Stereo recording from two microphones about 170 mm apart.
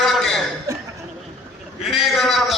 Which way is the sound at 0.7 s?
20° right (ahead or behind).